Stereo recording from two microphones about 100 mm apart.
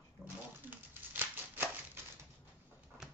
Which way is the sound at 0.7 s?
20° right (ahead or behind).